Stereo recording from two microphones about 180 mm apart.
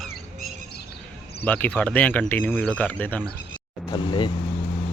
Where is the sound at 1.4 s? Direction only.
10° left (ahead or behind).